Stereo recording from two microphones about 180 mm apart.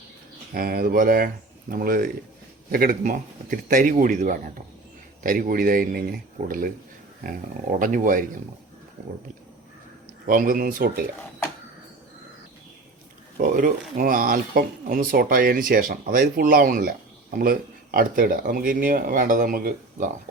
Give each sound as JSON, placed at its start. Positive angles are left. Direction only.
{"t": 0.5, "sound": "speech", "side_deg": -55}
{"t": 9.0, "sound": "wild animals", "side_deg": -40}
{"t": 10.2, "sound": "speech", "side_deg": -50}
{"t": 13.4, "sound": "speech", "side_deg": -50}